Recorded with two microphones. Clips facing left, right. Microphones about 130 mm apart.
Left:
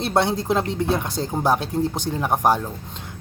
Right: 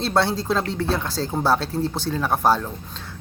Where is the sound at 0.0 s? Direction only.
20° left (ahead or behind).